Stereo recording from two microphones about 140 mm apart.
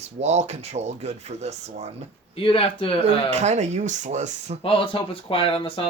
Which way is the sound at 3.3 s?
55° right (ahead or behind).